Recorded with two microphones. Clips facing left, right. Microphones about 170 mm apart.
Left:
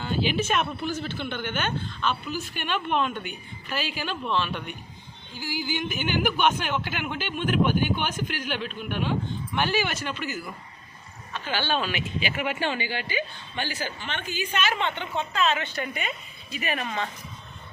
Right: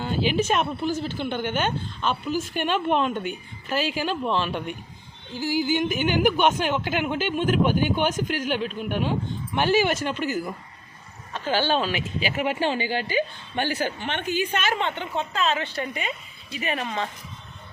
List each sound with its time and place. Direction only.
0.0 s speech: 40° right (ahead or behind)
5.4 s a woman's voice: 45° right (ahead or behind); by 16.8 s 30° right (ahead or behind)